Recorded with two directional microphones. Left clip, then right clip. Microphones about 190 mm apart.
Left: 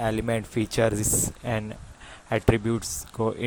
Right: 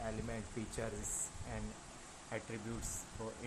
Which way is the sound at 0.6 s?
50° left (ahead or behind).